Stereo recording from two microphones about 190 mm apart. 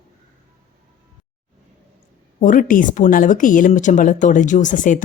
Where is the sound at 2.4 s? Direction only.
45° left (ahead or behind).